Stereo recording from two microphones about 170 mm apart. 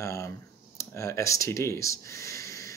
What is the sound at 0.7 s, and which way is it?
Speech, 15° left (ahead or behind).